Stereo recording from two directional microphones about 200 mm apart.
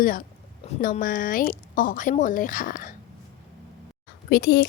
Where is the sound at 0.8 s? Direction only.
45° left (ahead or behind).